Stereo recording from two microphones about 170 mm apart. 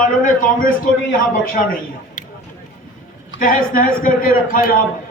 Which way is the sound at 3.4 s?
55° left (ahead or behind).